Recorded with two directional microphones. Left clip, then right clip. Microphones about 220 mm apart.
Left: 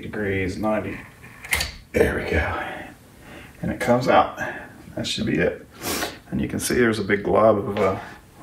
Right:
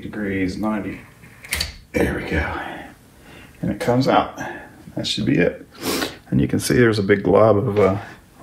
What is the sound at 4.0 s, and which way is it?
Speech, 10° right (ahead or behind).